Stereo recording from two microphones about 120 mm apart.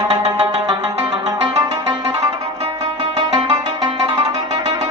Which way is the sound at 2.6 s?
50° right (ahead or behind).